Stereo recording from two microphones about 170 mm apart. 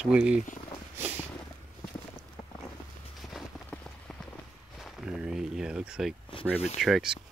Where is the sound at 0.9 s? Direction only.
10° right (ahead or behind).